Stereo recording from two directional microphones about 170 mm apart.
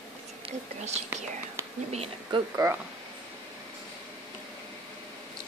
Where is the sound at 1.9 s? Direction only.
40° right (ahead or behind).